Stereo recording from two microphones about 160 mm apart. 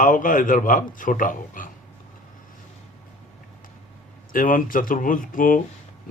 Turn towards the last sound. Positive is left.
turn(degrees=60)  # may be behind; listen again after turning